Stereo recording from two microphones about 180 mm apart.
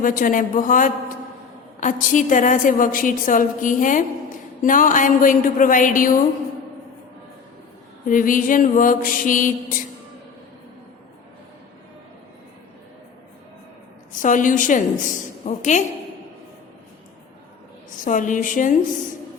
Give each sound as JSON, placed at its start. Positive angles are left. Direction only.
{"t": 0.0, "sound": "a woman's voice", "side_deg": 50}
{"t": 8.0, "sound": "a woman's voice", "side_deg": 50}
{"t": 14.2, "sound": "a woman's voice", "side_deg": 45}
{"t": 18.0, "sound": "a woman's voice", "side_deg": 45}